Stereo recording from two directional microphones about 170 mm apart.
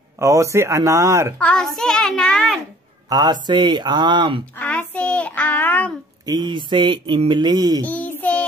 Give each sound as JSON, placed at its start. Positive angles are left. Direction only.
{"t": 0.2, "sound": "speech", "side_deg": -15}
{"t": 1.4, "sound": "a child's voice", "side_deg": 5}
{"t": 3.1, "sound": "a man's voice", "side_deg": -25}
{"t": 4.6, "sound": "a child's voice", "side_deg": 10}
{"t": 6.2, "sound": "speech", "side_deg": -25}
{"t": 7.8, "sound": "child singing", "side_deg": 10}